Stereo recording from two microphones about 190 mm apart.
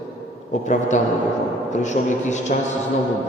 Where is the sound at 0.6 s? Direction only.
40° left (ahead or behind).